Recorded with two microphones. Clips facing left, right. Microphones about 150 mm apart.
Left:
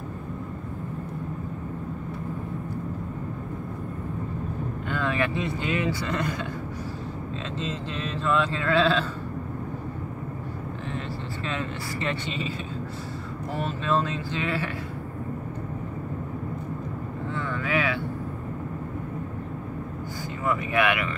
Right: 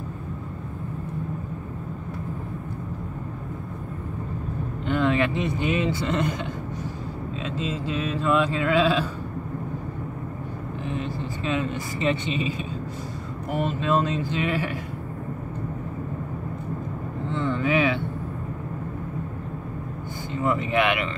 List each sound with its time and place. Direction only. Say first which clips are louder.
4.8 s speech: right 5 dB; 20° right (ahead or behind)
7.5 s a sound: right 5 dB; 10° right (ahead or behind)
10.9 s speech: right 6 dB; 15° right (ahead or behind)
13.5 s a sound: right 3 dB; 15° right (ahead or behind)
17.3 s vehicle: right 5 dB; 20° right (ahead or behind)
20.4 s speech: right 2 dB; 25° right (ahead or behind)